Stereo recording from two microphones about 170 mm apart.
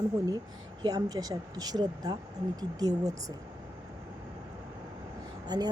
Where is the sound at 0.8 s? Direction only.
25° right (ahead or behind).